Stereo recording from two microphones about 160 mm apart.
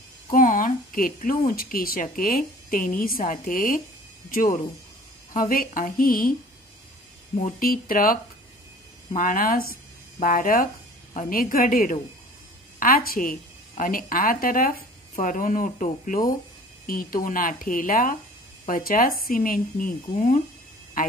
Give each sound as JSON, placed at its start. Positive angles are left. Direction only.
{"t": 0.3, "sound": "a woman's voice", "side_deg": 60}
{"t": 7.3, "sound": "a woman's voice", "side_deg": 60}